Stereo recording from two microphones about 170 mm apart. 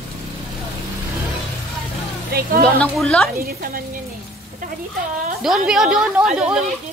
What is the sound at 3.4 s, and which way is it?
Speech, 60° right (ahead or behind).